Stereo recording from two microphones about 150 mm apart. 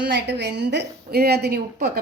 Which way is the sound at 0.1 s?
90° right.